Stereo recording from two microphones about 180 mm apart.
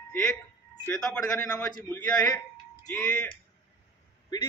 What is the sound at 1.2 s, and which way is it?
A man's voice, 15° left (ahead or behind).